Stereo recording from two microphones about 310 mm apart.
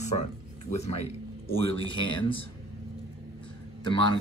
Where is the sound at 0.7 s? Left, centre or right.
Left.